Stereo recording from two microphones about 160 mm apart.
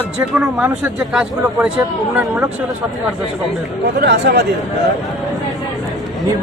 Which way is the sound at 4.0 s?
90° right.